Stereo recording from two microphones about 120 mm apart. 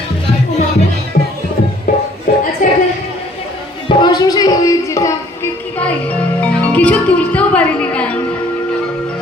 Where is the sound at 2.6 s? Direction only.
90° left.